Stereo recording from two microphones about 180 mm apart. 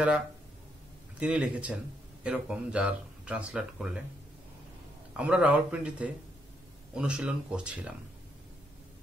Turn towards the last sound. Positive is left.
turn(degrees=-5)  # may be behind; listen again after turning